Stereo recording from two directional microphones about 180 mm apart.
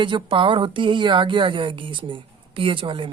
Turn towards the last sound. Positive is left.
turn(degrees=-30)  # may be behind; listen again after turning